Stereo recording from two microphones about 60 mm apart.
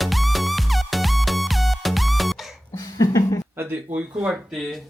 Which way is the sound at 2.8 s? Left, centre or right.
Left.